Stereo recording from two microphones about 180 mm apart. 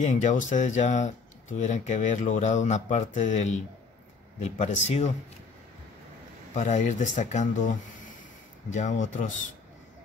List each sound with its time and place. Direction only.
0.0 s speech: 40° left (ahead or behind)
6.5 s speech: 40° left (ahead or behind)